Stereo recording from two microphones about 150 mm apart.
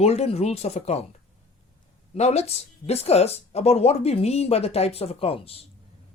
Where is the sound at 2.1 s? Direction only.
45° left (ahead or behind).